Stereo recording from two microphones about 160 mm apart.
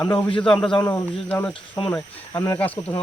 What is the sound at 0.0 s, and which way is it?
Speech, 10° left (ahead or behind).